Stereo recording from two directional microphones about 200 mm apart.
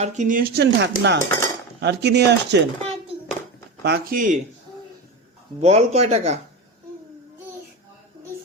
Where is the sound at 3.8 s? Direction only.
50° right (ahead or behind).